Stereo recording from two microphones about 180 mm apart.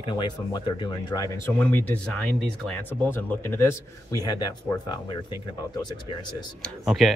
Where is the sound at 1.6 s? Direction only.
10° left (ahead or behind).